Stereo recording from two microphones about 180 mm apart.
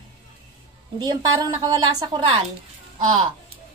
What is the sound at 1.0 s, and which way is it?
A woman's voice, 20° right (ahead or behind).